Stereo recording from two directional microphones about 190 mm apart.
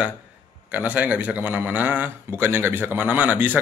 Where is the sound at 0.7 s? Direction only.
10° right (ahead or behind).